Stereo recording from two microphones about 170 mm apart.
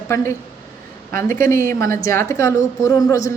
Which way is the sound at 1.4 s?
15° left (ahead or behind).